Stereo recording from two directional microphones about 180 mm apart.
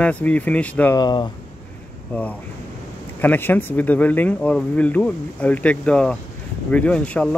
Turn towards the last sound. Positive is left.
turn(degrees=5)  # may be behind; listen again after turning